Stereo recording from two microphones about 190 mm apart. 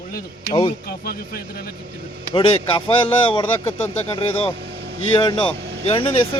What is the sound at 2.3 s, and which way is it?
Speech, 30° left (ahead or behind).